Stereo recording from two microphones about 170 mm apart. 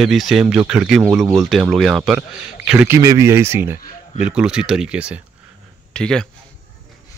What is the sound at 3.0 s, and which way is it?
A man's voice, 20° right (ahead or behind).